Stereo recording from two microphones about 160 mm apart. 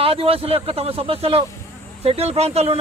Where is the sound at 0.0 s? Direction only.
35° right (ahead or behind).